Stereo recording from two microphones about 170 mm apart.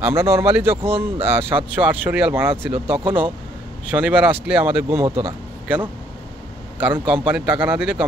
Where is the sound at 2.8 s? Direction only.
30° right (ahead or behind).